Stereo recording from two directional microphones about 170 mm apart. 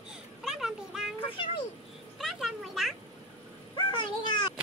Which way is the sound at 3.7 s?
30° left (ahead or behind).